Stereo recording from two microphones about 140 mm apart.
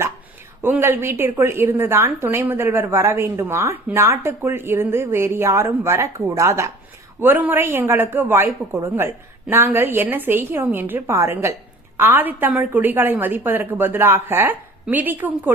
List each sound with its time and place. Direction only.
0.6 s a woman's voice: 15° right (ahead or behind)